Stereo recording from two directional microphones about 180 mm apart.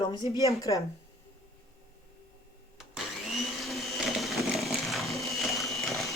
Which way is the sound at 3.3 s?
Centre (ahead or behind).